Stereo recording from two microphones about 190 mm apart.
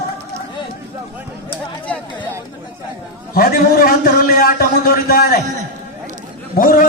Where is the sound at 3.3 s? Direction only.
50° left (ahead or behind).